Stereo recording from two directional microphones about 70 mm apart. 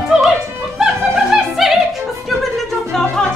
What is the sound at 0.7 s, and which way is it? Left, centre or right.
Opera, centre.